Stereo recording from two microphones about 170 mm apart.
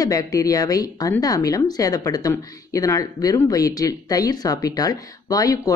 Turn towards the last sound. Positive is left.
turn(degrees=20)  # may be behind; listen again after turning